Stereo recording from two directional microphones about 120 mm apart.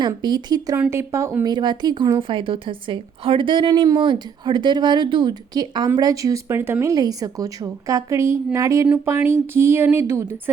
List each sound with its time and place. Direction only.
0.2 s a woman's voice: 35° right (ahead or behind)
0.8 s a woman's voice: 20° right (ahead or behind)
1.5 s a woman's voice: 40° right (ahead or behind); by 6.9 s 20° right (ahead or behind)
6.9 s a woman's voice: 30° right (ahead or behind)